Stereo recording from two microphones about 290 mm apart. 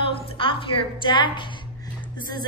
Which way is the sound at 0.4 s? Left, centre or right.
Centre.